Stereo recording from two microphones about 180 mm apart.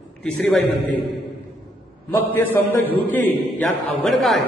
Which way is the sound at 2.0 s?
15° left (ahead or behind).